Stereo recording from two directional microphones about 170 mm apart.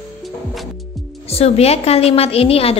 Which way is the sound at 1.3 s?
35° left (ahead or behind).